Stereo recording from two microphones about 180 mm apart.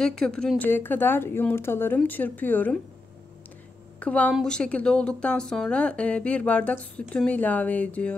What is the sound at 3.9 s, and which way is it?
A woman's voice, 5° left (ahead or behind).